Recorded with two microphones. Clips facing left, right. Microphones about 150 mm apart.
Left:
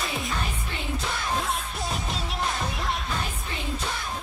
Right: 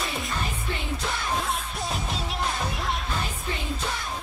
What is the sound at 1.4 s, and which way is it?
Music, centre (ahead or behind).